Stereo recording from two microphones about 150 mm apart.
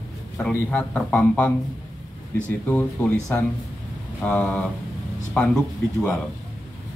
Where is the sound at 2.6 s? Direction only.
15° left (ahead or behind).